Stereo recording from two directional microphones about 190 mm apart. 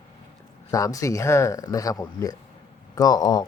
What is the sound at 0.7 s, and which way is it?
A man's voice, 15° left (ahead or behind).